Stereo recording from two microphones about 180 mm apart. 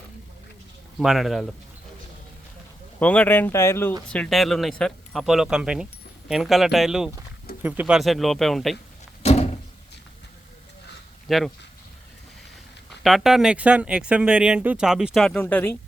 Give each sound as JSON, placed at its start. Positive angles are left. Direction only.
{"t": 0.9, "sound": "speech", "side_deg": 0}
{"t": 3.0, "sound": "speech", "side_deg": 10}
{"t": 9.2, "sound": "a sound", "side_deg": 35}
{"t": 11.3, "sound": "speech", "side_deg": 0}
{"t": 13.0, "sound": "speech", "side_deg": 0}